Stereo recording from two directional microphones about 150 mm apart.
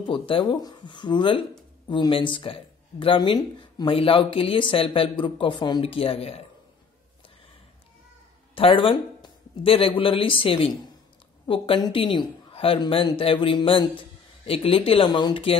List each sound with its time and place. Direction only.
0.0 s speech: 35° left (ahead or behind)
8.5 s speech: 35° left (ahead or behind)